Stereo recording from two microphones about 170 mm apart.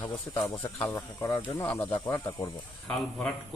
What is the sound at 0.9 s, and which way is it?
Speech, 25° left (ahead or behind).